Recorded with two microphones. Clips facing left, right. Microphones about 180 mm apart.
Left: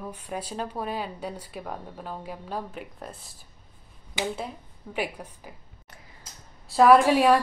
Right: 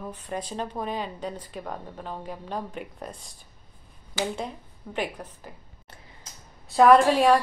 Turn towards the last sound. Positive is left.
turn(degrees=5)  # may be behind; listen again after turning